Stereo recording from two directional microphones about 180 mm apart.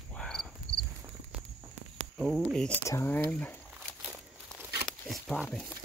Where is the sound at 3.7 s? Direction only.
Centre (ahead or behind).